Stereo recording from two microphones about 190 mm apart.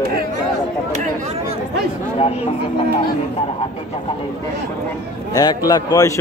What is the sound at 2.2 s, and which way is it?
Speech, 30° left (ahead or behind).